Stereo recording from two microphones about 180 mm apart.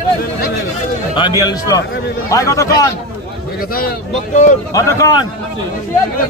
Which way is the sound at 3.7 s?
50° left (ahead or behind).